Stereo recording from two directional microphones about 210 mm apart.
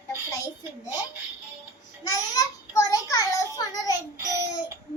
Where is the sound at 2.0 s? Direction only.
20° left (ahead or behind).